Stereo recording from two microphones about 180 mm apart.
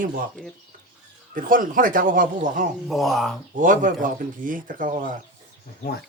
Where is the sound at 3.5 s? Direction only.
50° right (ahead or behind).